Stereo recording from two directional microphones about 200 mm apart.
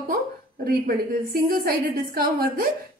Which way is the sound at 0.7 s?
45° right (ahead or behind).